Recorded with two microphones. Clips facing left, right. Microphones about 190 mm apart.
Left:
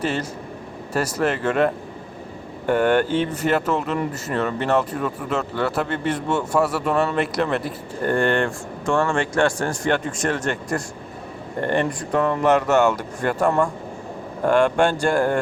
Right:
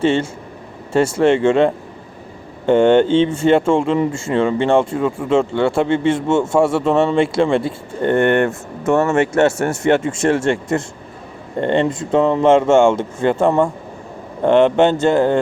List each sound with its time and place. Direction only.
0.0 s speech: 25° right (ahead or behind)
8.4 s speech: 5° right (ahead or behind)
8.9 s speech: 20° right (ahead or behind)